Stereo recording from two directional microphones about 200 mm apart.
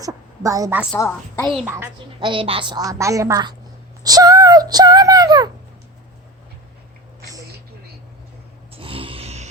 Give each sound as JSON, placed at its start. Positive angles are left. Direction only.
{"t": 0.0, "sound": "a woman's voice", "side_deg": -15}
{"t": 0.9, "sound": "a woman's voice", "side_deg": 15}
{"t": 1.5, "sound": "a woman's voice", "side_deg": 0}
{"t": 2.2, "sound": "a woman's voice", "side_deg": -25}
{"t": 8.7, "sound": "a sound", "side_deg": -25}